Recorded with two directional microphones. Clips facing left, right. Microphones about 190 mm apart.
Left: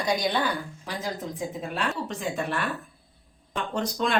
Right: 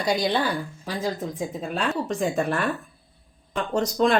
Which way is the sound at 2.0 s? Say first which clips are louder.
Right 6 dB; 45° right (ahead or behind).